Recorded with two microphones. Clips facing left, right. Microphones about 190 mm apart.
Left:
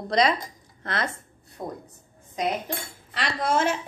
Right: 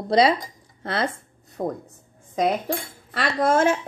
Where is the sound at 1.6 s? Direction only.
45° right (ahead or behind).